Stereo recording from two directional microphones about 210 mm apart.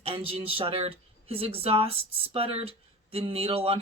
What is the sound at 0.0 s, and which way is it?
Speech, 25° right (ahead or behind).